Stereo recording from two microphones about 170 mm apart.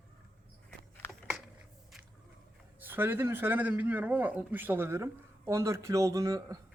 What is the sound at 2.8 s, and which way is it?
Speech, 10° right (ahead or behind).